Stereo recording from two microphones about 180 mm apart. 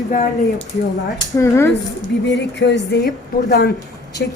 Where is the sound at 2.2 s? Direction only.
75° left (ahead or behind).